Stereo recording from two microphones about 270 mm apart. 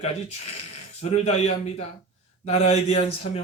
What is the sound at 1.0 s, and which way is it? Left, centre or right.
Speech, left.